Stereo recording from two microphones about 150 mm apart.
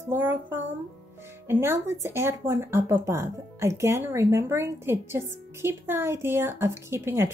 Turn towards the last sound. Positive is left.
turn(degrees=-15)  # may be behind; listen again after turning